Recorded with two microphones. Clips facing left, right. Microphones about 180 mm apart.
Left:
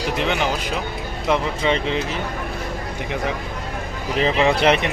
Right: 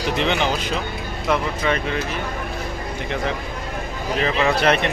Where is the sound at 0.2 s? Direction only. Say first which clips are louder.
Right 1 dB; 5° left (ahead or behind).